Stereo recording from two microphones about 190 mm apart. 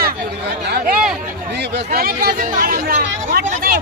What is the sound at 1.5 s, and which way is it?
Speech, 65° right (ahead or behind).